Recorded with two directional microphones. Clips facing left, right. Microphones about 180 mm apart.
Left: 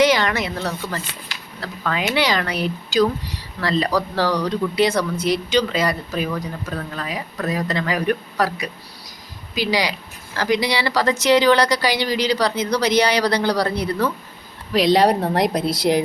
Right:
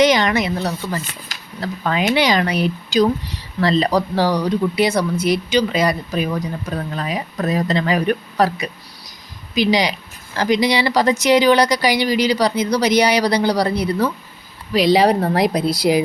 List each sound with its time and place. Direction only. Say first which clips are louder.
0.0 s speech: right 2 dB; 20° right (ahead or behind)